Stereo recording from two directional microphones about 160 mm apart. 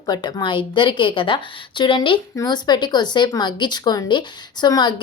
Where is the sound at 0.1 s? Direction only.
30° left (ahead or behind).